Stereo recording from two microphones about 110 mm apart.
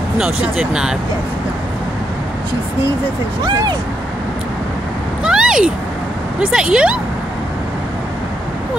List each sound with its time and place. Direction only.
0.2 s speech: 10° right (ahead or behind)
3.4 s speech: 40° right (ahead or behind)
5.2 s cat: 5° right (ahead or behind)
6.4 s speech: 5° right (ahead or behind)